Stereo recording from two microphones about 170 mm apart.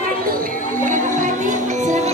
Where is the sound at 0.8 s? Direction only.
50° right (ahead or behind).